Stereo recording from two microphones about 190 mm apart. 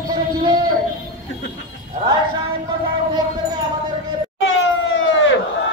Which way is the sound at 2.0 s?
30° right (ahead or behind).